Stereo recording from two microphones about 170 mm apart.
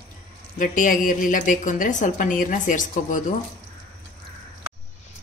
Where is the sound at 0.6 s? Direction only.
50° left (ahead or behind).